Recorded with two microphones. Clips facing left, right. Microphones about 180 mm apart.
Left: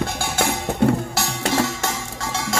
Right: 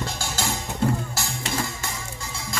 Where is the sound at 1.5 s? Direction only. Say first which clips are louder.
Left 9 dB; 80° left.